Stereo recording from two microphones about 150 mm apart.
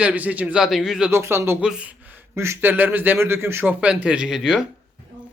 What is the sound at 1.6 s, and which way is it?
Speech, 5° right (ahead or behind).